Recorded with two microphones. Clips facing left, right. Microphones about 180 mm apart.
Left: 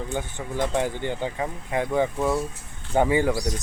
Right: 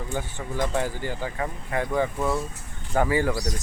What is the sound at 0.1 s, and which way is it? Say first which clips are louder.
Speech: left 1 dB; 15° left (ahead or behind).